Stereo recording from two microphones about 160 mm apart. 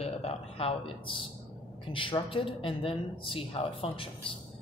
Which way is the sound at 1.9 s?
30° left (ahead or behind).